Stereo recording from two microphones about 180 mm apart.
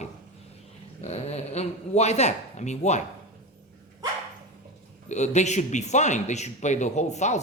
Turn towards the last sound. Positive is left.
turn(degrees=40)  # may be behind; listen again after turning